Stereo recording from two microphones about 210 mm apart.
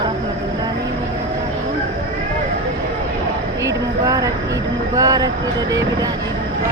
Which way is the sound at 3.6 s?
15° right (ahead or behind).